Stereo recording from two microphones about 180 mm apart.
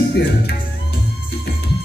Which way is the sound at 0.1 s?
65° left (ahead or behind).